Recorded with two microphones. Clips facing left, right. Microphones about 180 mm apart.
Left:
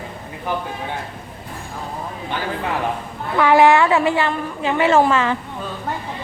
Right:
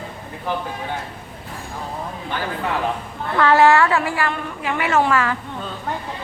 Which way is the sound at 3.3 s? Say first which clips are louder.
Left 1 dB; 15° left (ahead or behind).